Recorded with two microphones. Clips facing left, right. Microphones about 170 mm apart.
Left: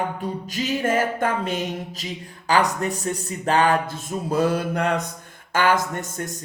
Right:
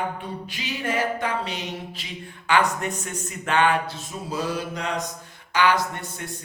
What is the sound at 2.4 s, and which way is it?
A man's voice, 35° left (ahead or behind).